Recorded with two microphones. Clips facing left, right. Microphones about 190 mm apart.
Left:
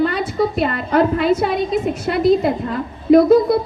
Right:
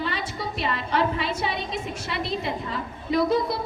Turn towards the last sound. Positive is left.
turn(degrees=55)  # may be behind; listen again after turning